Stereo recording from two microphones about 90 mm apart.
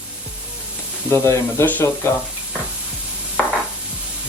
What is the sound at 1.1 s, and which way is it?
Stir, 30° left (ahead or behind).